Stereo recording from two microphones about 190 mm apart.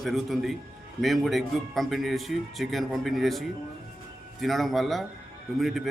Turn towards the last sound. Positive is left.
turn(degrees=0)  # may be behind; listen again after turning